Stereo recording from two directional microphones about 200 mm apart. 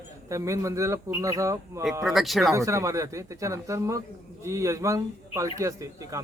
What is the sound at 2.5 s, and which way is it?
A man's voice, 15° right (ahead or behind).